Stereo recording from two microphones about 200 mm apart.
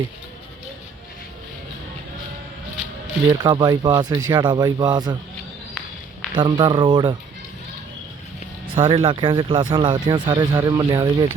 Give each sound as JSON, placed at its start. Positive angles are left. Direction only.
{"t": 3.2, "sound": "speech", "side_deg": -20}
{"t": 6.3, "sound": "speech", "side_deg": -25}
{"t": 8.6, "sound": "speech", "side_deg": -25}